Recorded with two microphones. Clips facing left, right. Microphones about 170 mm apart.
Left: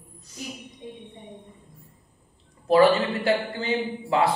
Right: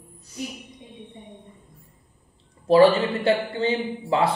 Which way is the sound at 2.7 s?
25° right (ahead or behind).